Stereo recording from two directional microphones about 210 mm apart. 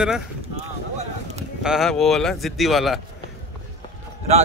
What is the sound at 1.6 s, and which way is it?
Speech, centre (ahead or behind).